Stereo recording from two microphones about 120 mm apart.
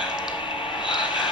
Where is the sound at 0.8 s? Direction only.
40° left (ahead or behind).